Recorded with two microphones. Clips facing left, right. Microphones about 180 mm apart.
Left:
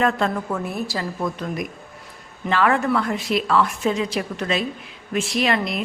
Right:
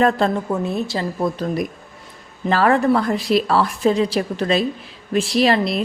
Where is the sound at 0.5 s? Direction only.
20° right (ahead or behind).